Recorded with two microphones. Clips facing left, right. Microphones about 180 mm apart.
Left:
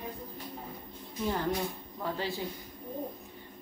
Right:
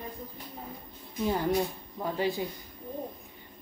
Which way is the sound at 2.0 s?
15° right (ahead or behind).